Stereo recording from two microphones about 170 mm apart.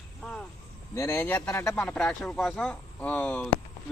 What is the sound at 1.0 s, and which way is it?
A man's voice, 15° left (ahead or behind).